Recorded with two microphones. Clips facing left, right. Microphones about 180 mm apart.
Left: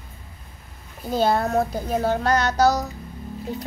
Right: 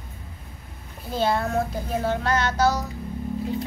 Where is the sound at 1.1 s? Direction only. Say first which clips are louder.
Left 3 dB; 40° left (ahead or behind).